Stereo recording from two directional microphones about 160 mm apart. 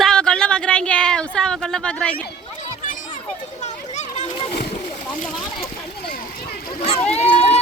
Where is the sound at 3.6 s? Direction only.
45° left (ahead or behind).